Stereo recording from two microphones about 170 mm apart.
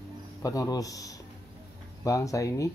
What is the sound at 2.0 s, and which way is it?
Speech, 20° left (ahead or behind).